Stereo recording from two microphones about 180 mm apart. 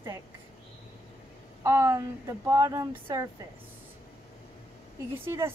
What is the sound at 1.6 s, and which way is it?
Speech, 15° right (ahead or behind).